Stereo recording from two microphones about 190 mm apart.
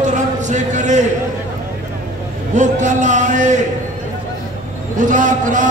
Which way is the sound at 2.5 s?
40° right (ahead or behind).